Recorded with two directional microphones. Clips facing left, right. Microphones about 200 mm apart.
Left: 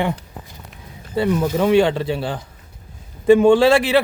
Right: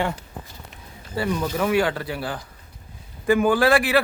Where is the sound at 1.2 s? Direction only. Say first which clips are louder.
Left 6 dB; 20° left (ahead or behind).